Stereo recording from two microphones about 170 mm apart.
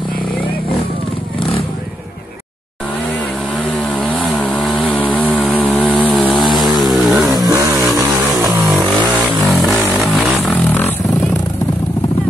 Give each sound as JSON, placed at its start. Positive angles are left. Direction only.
{"t": 4.0, "sound": "chainsaw", "side_deg": 5}
{"t": 6.5, "sound": "vehicle", "side_deg": 0}
{"t": 7.3, "sound": "vehicle", "side_deg": -20}
{"t": 9.4, "sound": "vehicle", "side_deg": 0}